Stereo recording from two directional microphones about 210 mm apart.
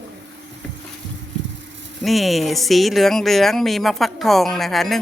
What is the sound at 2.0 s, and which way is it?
Speech, centre (ahead or behind).